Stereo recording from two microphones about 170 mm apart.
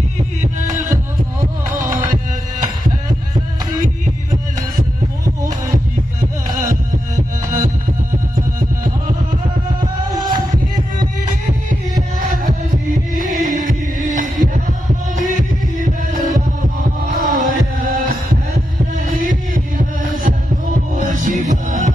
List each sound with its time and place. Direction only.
0.4 s music: 45° right (ahead or behind)
6.5 s music: 50° right (ahead or behind)
9.8 s music: 25° right (ahead or behind)
12.2 s music: 50° right (ahead or behind)
13.1 s heart sounds: 50° right (ahead or behind)
14.1 s music: 50° right (ahead or behind)
16.6 s heart sounds: 60° right (ahead or behind)
19.1 s heart murmur: 50° right (ahead or behind)
20.9 s music: 50° right (ahead or behind)